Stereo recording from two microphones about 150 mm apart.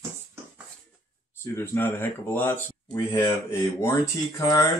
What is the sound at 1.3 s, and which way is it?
Speech, 15° left (ahead or behind).